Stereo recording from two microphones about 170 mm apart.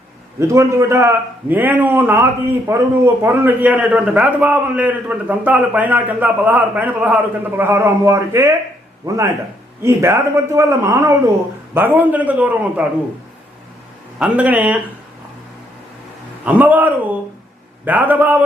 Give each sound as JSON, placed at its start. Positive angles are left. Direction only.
{"t": 0.3, "sound": "a man's voice", "side_deg": -15}
{"t": 14.2, "sound": "a man's voice", "side_deg": -10}
{"t": 16.5, "sound": "a man's voice", "side_deg": -10}